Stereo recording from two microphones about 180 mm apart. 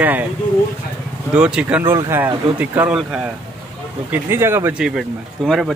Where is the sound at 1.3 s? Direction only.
5° right (ahead or behind).